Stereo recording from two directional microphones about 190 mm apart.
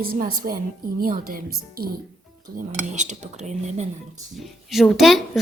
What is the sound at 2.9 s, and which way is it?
Speech, 40° right (ahead or behind).